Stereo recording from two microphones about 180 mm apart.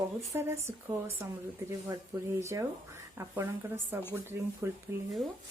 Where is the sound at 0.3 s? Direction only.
15° right (ahead or behind).